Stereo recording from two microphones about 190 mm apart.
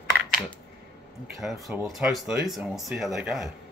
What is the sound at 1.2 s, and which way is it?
Speech, 5° right (ahead or behind).